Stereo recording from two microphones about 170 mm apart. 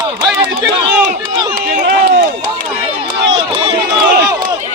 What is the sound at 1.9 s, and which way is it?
Run, 65° right (ahead or behind).